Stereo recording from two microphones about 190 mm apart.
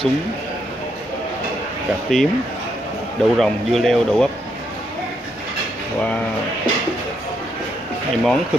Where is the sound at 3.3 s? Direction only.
Centre (ahead or behind).